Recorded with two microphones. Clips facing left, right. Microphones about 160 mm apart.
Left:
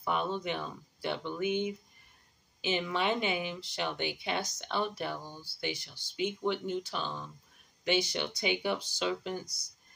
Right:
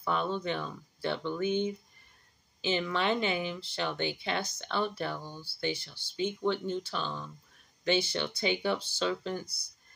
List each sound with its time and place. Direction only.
0.0 s speech: 15° left (ahead or behind)